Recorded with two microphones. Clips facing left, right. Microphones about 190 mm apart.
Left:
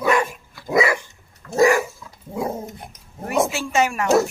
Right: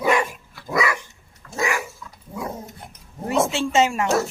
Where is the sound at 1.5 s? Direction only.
40° left (ahead or behind).